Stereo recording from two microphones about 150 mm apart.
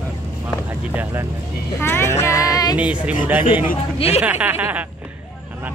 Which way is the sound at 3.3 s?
10° right (ahead or behind).